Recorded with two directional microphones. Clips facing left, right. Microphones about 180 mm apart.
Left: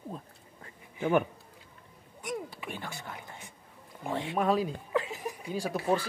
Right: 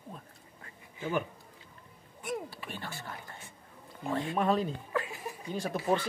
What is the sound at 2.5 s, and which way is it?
Speech, 15° left (ahead or behind).